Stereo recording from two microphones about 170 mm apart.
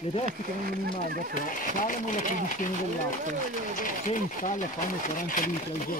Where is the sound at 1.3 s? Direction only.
50° left (ahead or behind).